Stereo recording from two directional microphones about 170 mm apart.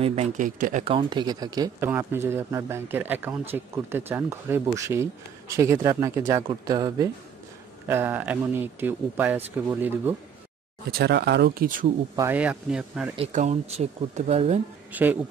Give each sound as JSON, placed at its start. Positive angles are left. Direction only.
{"t": 0.0, "sound": "speech", "side_deg": -40}
{"t": 0.8, "sound": "speech", "side_deg": -30}
{"t": 7.9, "sound": "speech", "side_deg": -10}
{"t": 10.9, "sound": "speech", "side_deg": -70}
{"t": 12.2, "sound": "speech", "side_deg": -10}
{"t": 13.3, "sound": "speech", "side_deg": -45}
{"t": 14.9, "sound": "speech", "side_deg": -10}